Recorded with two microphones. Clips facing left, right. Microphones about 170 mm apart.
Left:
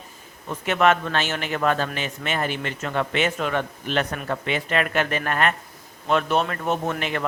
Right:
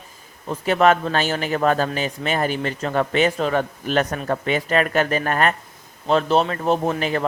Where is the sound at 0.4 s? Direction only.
35° right (ahead or behind).